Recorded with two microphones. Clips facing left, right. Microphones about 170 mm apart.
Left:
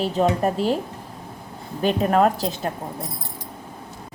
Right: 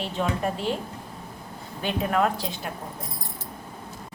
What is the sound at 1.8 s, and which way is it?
Speech, 40° left (ahead or behind).